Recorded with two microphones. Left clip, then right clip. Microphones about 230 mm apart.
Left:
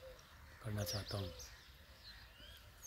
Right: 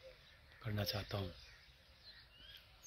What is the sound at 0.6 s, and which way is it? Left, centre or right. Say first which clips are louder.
Speech: right 2 dB; centre.